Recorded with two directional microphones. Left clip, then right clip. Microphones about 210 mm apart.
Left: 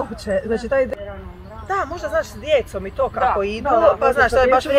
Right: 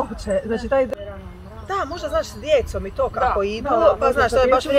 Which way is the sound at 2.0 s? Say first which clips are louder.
Right 1 dB; 55° right (ahead or behind).